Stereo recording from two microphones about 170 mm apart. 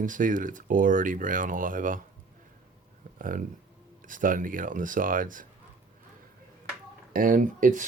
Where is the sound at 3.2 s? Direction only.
50° right (ahead or behind).